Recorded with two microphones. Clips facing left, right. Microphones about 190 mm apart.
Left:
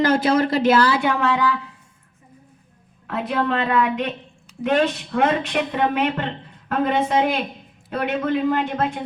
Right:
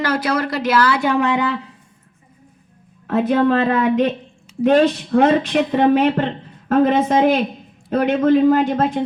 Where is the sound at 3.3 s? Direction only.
40° right (ahead or behind).